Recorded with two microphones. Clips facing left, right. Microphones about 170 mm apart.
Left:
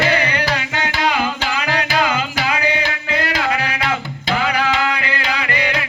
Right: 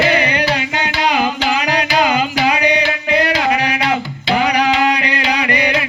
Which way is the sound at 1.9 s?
20° right (ahead or behind).